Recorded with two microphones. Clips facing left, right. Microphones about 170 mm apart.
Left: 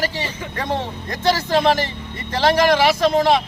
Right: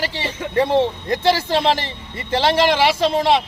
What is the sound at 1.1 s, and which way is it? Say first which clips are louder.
Speech: right 2 dB; 25° right (ahead or behind).